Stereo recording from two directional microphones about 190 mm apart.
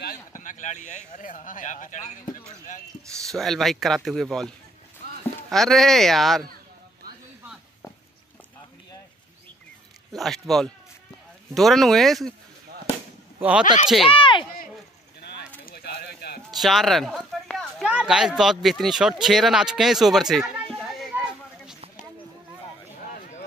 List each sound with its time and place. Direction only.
0.0 s speech: 45° left (ahead or behind)
3.3 s speech: centre (ahead or behind)
5.5 s speech: centre (ahead or behind)
10.1 s speech: centre (ahead or behind)
13.4 s speech: 5° right (ahead or behind)
14.0 s speech: 25° left (ahead or behind)
15.6 s a sound: 55° left (ahead or behind)
16.4 s speech: centre (ahead or behind)
20.7 s a sound: centre (ahead or behind)
23.0 s a sound: 45° left (ahead or behind)